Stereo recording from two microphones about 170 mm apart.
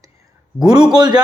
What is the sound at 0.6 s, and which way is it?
Speech, 25° right (ahead or behind).